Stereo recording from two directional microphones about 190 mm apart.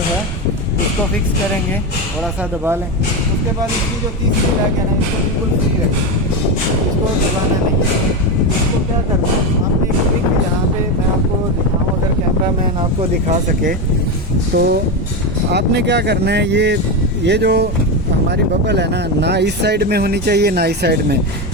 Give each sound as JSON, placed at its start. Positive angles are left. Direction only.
{"t": 13.0, "sound": "speech", "side_deg": -35}
{"t": 14.5, "sound": "speech", "side_deg": -55}